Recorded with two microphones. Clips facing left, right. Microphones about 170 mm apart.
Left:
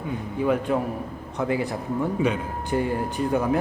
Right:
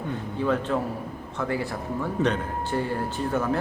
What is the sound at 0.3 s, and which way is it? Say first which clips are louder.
A man's voice: left 2 dB; 15° left (ahead or behind).